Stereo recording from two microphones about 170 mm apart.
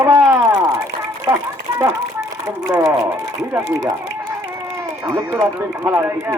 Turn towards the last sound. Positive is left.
turn(degrees=-15)  # may be behind; listen again after turning